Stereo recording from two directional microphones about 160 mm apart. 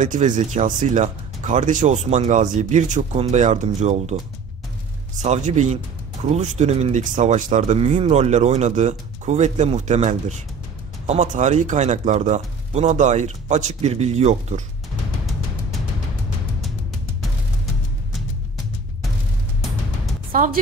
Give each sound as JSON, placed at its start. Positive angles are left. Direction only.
{"t": 0.0, "sound": "speech", "side_deg": -55}
{"t": 5.2, "sound": "speech", "side_deg": -45}
{"t": 20.3, "sound": "music", "side_deg": -60}